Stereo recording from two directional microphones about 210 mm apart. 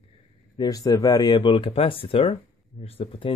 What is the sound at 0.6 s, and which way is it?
Speech, 15° left (ahead or behind).